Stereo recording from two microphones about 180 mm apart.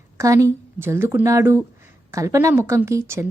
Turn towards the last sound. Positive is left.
turn(degrees=-15)  # may be behind; listen again after turning